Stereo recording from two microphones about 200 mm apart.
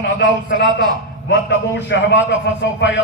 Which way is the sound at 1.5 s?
65° left (ahead or behind).